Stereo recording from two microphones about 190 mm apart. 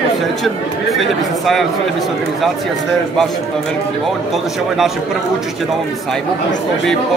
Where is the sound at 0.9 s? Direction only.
Centre (ahead or behind).